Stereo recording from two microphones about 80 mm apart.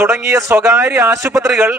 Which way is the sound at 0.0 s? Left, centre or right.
Right.